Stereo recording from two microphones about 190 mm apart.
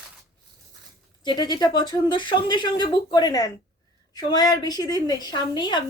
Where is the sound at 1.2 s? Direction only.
25° left (ahead or behind).